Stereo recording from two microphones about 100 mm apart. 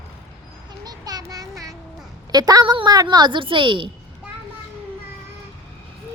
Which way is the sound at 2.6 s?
55° right (ahead or behind).